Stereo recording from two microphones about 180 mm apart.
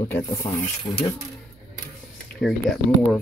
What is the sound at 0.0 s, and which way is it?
Speech, 15° left (ahead or behind).